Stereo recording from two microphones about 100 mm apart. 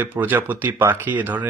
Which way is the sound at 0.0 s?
20° right (ahead or behind).